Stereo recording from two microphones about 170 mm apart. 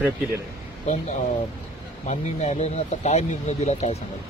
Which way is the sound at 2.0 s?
40° left (ahead or behind).